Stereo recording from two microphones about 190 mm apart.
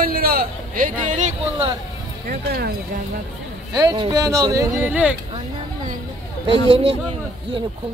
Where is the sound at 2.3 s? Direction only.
50° right (ahead or behind).